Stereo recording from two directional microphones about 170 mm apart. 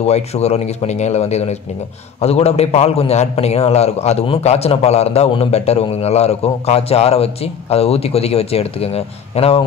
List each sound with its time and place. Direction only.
0.0 s a man's voice: 40° left (ahead or behind)